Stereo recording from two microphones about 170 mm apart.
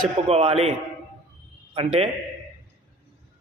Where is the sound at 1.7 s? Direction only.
30° right (ahead or behind).